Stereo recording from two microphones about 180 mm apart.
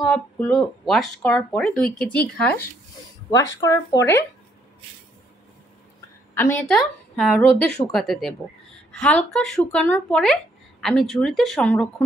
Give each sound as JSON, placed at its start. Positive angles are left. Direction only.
{"t": 0.0, "sound": "a woman's voice", "side_deg": 5}
{"t": 3.3, "sound": "speech", "side_deg": 20}
{"t": 6.3, "sound": "a woman's voice", "side_deg": 10}